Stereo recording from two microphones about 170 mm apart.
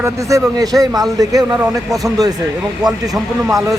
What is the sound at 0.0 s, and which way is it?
A man's voice, 20° right (ahead or behind).